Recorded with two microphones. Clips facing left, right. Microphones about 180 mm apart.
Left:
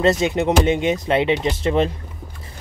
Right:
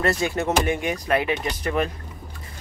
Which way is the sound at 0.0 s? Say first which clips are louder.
Left 5 dB; 20° left (ahead or behind).